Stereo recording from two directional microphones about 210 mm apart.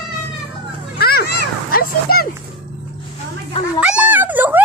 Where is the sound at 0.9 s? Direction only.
45° left (ahead or behind).